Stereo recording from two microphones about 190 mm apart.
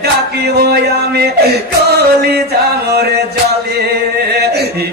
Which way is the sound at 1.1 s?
55° right (ahead or behind).